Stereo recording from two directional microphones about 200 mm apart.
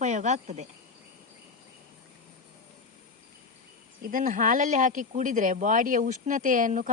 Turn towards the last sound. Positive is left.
turn(degrees=-40)  # may be behind; listen again after turning